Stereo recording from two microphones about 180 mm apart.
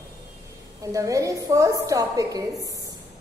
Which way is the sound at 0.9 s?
20° right (ahead or behind).